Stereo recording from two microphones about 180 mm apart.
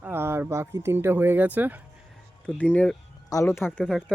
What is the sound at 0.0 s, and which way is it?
Speech, 15° right (ahead or behind).